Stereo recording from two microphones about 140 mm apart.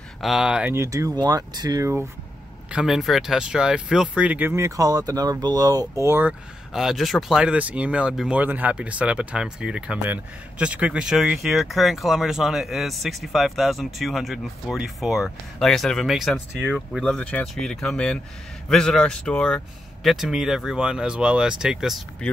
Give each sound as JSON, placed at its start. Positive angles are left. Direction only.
{"t": 0.2, "sound": "speech", "side_deg": -5}
{"t": 0.7, "sound": "speech", "side_deg": -20}
{"t": 2.7, "sound": "speech", "side_deg": -5}
{"t": 6.7, "sound": "speech", "side_deg": 0}